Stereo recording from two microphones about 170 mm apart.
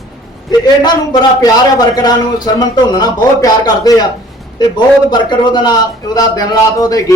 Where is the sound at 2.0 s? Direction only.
25° left (ahead or behind).